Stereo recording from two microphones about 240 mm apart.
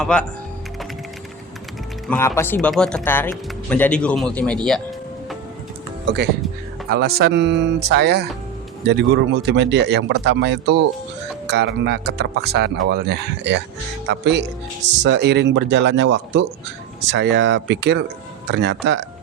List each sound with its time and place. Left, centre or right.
0.0 s speech: centre
2.0 s speech: centre
6.9 s speech: right